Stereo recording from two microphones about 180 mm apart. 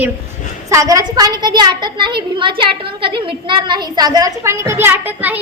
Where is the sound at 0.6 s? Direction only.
20° right (ahead or behind).